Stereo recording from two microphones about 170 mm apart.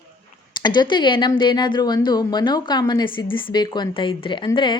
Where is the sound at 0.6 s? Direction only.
25° left (ahead or behind).